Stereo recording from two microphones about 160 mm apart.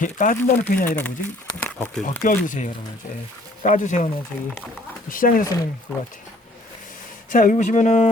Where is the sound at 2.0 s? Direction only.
55° left (ahead or behind).